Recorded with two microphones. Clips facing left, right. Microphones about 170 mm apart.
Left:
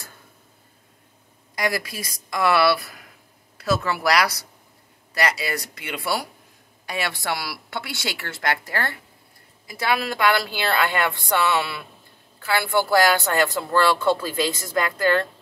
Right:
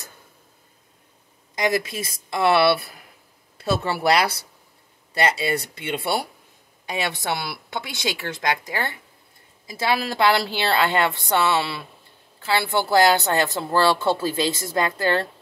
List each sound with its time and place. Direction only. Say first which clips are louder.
1.5 s a woman's voice: right 3 dB; 20° right (ahead or behind)